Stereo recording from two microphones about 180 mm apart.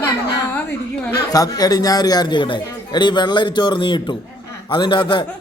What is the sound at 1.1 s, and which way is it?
A man's voice, 20° left (ahead or behind).